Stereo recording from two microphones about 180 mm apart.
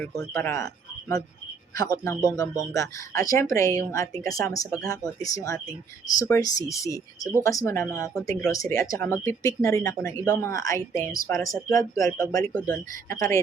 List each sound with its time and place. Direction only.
0.3 s speech: 15° left (ahead or behind)